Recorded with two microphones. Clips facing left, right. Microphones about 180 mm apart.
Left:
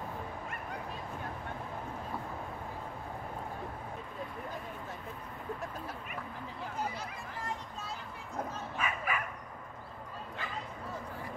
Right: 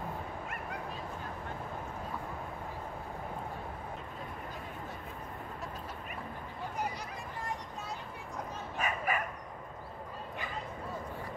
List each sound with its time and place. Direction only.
8.7 s bow-wow: 40° right (ahead or behind)